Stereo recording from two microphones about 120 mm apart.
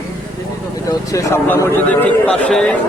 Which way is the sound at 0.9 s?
25° left (ahead or behind).